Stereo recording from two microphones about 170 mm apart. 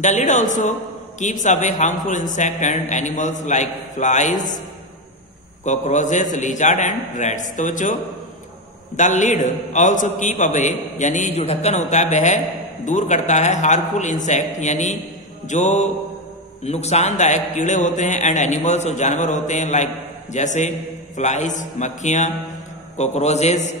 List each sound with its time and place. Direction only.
0.0 s a man's voice: 45° left (ahead or behind)
5.6 s a man's voice: 45° left (ahead or behind)